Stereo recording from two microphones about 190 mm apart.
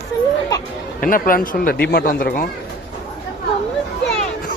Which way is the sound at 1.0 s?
45° left (ahead or behind).